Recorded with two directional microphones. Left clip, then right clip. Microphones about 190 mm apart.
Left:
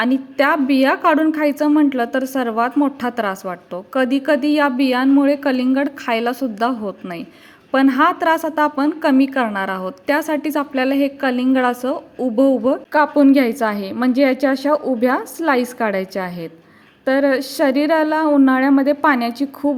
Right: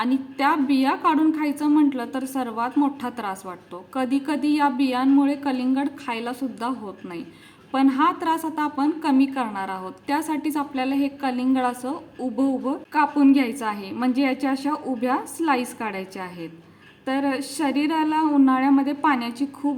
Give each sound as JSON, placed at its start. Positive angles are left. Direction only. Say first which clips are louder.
{"t": 0.0, "sound": "a woman's voice", "louder": "left 6 dB", "side_deg": 30}